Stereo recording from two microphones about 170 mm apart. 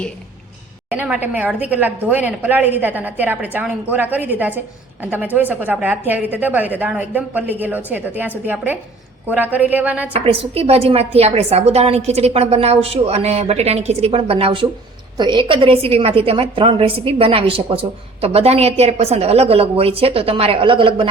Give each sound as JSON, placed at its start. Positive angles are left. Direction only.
{"t": 0.9, "sound": "a woman's voice", "side_deg": -10}
{"t": 10.1, "sound": "a woman's voice", "side_deg": -35}